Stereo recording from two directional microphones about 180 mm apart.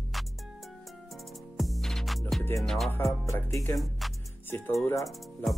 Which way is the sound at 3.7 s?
Centre (ahead or behind).